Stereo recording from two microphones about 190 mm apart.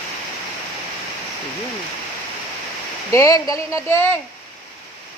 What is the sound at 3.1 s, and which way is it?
Speech, 15° left (ahead or behind).